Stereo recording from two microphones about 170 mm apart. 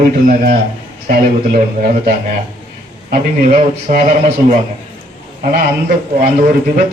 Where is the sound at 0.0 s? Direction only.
55° right (ahead or behind).